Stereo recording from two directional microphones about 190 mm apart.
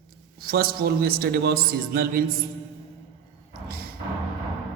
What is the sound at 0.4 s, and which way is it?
A man's voice, 55° right (ahead or behind).